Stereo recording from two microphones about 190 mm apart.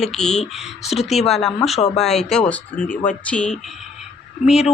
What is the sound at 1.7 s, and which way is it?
Speech, 35° left (ahead or behind).